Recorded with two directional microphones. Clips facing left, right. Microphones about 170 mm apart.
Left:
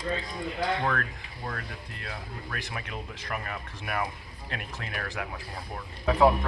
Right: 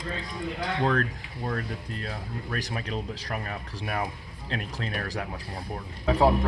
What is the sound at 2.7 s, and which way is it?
Speech, 30° right (ahead or behind).